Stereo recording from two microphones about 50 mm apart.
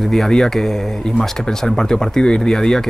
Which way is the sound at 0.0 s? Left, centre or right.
Centre.